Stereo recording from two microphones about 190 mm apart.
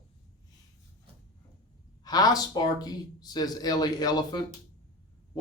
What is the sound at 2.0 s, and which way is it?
Speech, 20° left (ahead or behind).